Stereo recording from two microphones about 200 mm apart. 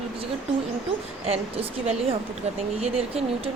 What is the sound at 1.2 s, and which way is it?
A woman's voice, 30° right (ahead or behind).